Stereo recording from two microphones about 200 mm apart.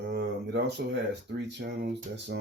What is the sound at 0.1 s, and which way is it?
Speech, 60° right (ahead or behind).